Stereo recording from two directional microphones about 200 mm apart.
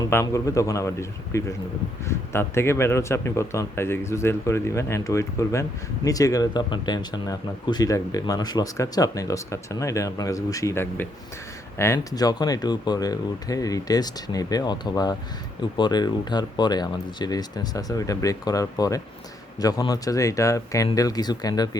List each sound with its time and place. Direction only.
0.0 s speech: 15° left (ahead or behind)